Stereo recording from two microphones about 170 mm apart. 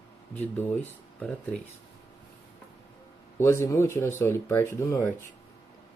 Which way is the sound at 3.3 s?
15° left (ahead or behind).